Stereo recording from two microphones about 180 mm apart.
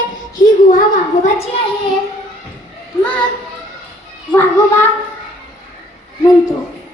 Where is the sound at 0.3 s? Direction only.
50° left (ahead or behind).